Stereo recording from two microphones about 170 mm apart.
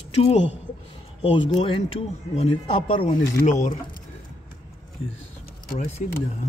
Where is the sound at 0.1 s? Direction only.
40° left (ahead or behind).